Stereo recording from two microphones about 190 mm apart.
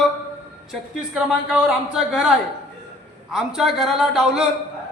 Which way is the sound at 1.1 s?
Centre (ahead or behind).